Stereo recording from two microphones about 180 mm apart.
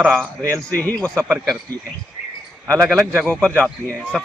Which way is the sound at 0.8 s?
10° left (ahead or behind).